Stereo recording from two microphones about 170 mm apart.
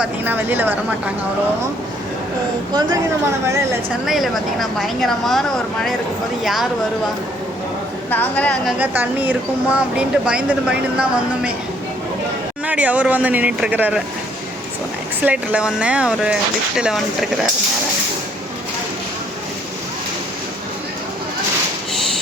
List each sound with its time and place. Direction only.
0.0 s speech: 10° right (ahead or behind)
3.4 s speech: 15° right (ahead or behind)
4.0 s speech: centre (ahead or behind)
8.1 s a woman's voice: 10° left (ahead or behind)
8.8 s speech: 10° right (ahead or behind)
12.6 s speech: 10° right (ahead or behind)
15.2 s speech: 10° right (ahead or behind)